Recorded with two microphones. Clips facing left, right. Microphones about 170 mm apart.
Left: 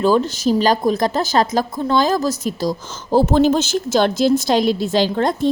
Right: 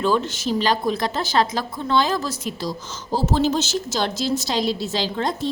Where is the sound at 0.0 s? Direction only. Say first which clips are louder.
Left 6 dB; 40° left (ahead or behind).